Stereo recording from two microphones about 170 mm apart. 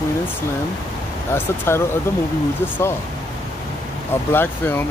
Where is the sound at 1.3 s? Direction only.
15° left (ahead or behind).